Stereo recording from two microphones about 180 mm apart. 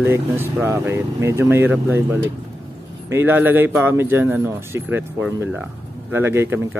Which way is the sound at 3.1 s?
10° right (ahead or behind).